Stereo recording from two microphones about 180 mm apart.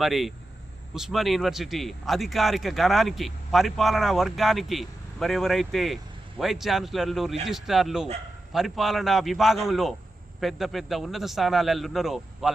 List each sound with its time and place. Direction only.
0.0 s speech: centre (ahead or behind)